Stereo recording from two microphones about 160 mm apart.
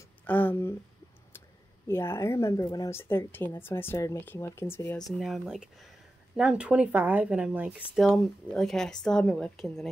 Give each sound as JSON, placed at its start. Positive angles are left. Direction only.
{"t": 0.3, "sound": "speech", "side_deg": 10}
{"t": 1.9, "sound": "speech", "side_deg": 15}
{"t": 4.9, "sound": "speech", "side_deg": 0}